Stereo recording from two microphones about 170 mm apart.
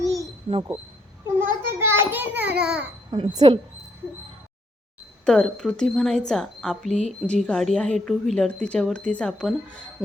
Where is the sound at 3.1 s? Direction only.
25° right (ahead or behind).